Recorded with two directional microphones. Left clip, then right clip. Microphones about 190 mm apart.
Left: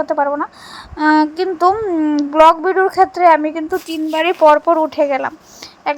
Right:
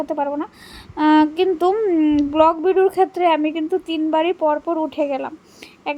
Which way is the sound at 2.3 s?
10° left (ahead or behind).